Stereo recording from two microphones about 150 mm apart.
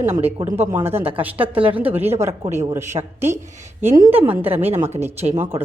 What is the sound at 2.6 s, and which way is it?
Speech, 15° right (ahead or behind).